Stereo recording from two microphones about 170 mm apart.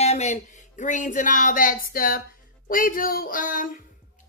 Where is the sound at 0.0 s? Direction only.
40° left (ahead or behind).